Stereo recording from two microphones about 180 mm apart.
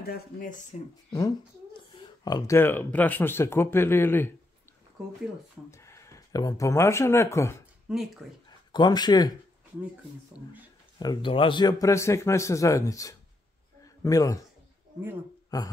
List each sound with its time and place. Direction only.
0.0 s speech: 55° left (ahead or behind)
1.1 s speech: 20° left (ahead or behind)
5.7 s speech: 15° left (ahead or behind)
7.9 s speech: centre (ahead or behind)
8.5 s speech: 25° left (ahead or behind)
11.0 s speech: 25° left (ahead or behind)
15.5 s speech: 20° left (ahead or behind)